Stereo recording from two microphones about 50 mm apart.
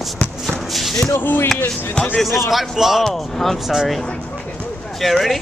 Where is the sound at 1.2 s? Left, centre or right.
Left.